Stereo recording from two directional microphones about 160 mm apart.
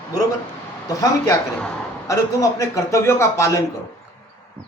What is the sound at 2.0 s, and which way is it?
A man's voice, 20° left (ahead or behind).